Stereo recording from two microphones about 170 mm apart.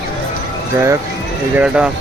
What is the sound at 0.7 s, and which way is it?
Speech, 15° right (ahead or behind).